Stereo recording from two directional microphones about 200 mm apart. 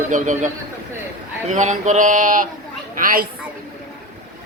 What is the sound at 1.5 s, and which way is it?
A woman's voice, 35° right (ahead or behind).